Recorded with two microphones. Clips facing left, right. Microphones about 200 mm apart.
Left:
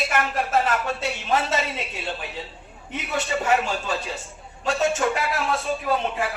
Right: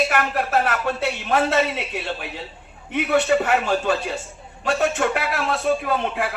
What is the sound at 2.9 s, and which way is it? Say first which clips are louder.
A man's voice: right 8 dB; 65° right (ahead or behind).